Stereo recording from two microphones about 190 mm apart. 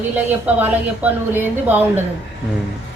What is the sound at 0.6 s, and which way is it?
A woman's voice, 10° right (ahead or behind).